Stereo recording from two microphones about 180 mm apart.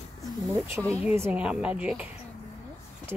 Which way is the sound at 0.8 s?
Centre (ahead or behind).